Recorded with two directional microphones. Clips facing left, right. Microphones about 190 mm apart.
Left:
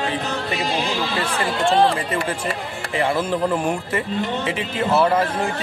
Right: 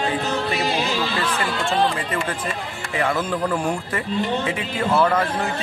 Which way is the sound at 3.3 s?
25° left (ahead or behind).